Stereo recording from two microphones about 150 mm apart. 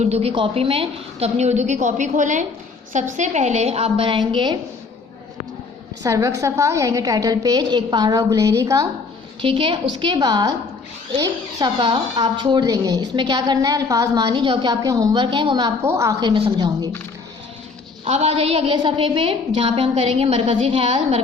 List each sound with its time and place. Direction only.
0.0 s a woman's voice: 45° right (ahead or behind)
6.0 s speech: 20° right (ahead or behind)
9.4 s speech: 35° right (ahead or behind)
15.8 s speech: 20° right (ahead or behind)
18.0 s a woman's voice: 45° right (ahead or behind)